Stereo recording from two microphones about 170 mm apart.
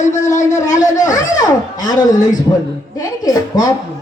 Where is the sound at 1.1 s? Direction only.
25° left (ahead or behind).